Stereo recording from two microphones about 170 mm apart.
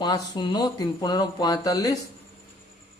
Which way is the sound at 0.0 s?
25° left (ahead or behind).